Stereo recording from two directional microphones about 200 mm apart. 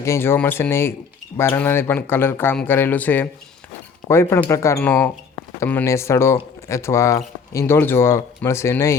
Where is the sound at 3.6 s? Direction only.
10° left (ahead or behind).